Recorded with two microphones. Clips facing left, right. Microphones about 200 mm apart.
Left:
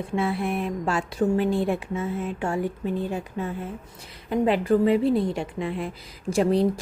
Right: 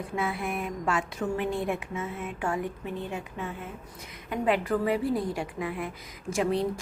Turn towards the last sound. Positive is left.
turn(degrees=35)  # may be behind; listen again after turning